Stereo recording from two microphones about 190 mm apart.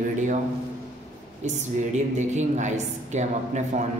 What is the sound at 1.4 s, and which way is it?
A woman's voice, 40° right (ahead or behind).